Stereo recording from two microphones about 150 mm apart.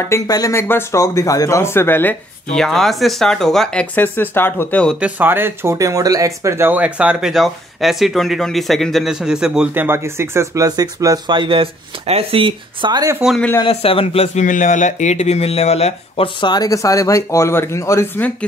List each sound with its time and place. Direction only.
0.0 s speech: 20° left (ahead or behind)
2.5 s speech: centre (ahead or behind)
5.0 s speech: 15° right (ahead or behind)
13.2 s speech: centre (ahead or behind)
13.6 s speech: 35° left (ahead or behind); by 18.3 s 15° left (ahead or behind)